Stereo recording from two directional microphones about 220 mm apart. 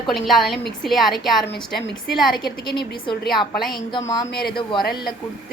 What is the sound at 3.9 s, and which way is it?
Speech, 15° left (ahead or behind).